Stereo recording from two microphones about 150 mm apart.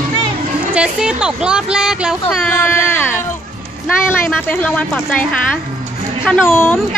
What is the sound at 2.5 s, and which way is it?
Speech, 15° left (ahead or behind).